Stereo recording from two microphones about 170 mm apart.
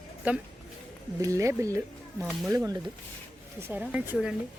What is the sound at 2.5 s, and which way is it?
Speech, 20° right (ahead or behind).